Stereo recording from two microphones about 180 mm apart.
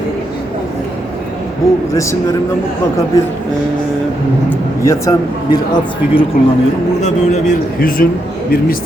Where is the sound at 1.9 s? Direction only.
15° left (ahead or behind).